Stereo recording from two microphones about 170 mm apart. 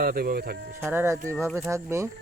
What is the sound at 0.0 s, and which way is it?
Speech, 60° right (ahead or behind).